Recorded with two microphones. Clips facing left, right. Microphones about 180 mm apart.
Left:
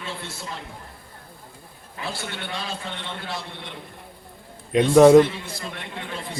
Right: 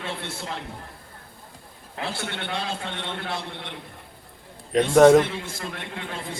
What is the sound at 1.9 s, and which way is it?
A man's voice, 60° right (ahead or behind).